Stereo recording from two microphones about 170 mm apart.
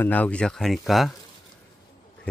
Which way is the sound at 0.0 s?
10° left (ahead or behind).